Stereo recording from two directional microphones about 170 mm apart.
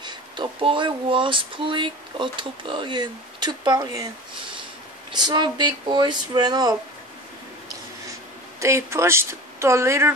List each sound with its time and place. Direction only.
0.0 s speech: 25° right (ahead or behind)
5.1 s speech: 25° right (ahead or behind)
8.5 s speech: 15° right (ahead or behind)